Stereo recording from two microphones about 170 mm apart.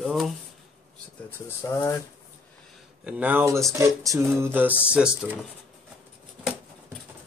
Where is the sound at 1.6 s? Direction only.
15° left (ahead or behind).